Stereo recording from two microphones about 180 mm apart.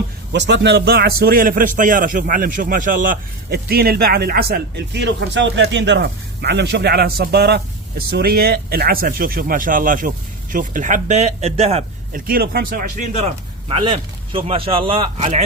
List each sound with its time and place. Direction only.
0.3 s a man's voice: 75° right (ahead or behind); by 11.9 s 35° right (ahead or behind)
12.1 s a man's voice: 55° right (ahead or behind)
13.1 s speech: 35° right (ahead or behind)